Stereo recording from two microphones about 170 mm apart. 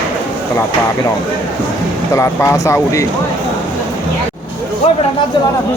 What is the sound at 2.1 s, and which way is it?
Speech, 15° left (ahead or behind).